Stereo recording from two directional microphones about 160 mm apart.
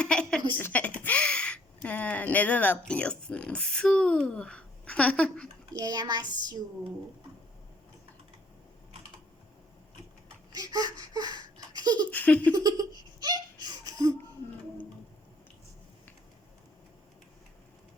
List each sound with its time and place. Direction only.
0.0 s a sound: 5° left (ahead or behind)
0.6 s speech: 10° left (ahead or behind)
5.8 s a child's voice: 25° right (ahead or behind)
10.6 s a sound: 25° right (ahead or behind)
12.1 s giggle: 10° left (ahead or behind)
12.5 s giggle: 25° right (ahead or behind)